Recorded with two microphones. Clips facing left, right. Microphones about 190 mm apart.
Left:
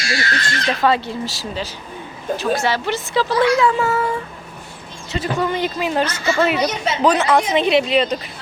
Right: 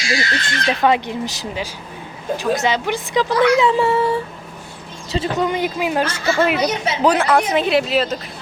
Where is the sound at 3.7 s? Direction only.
30° right (ahead or behind).